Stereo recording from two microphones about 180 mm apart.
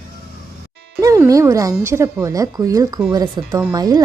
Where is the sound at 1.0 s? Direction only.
20° right (ahead or behind).